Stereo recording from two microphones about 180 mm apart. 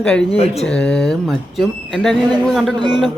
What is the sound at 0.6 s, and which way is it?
Speech, 5° left (ahead or behind).